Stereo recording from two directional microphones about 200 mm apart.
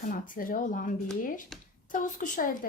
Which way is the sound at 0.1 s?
45° left (ahead or behind).